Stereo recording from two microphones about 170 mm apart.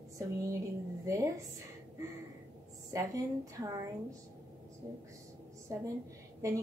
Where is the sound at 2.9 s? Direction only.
20° right (ahead or behind).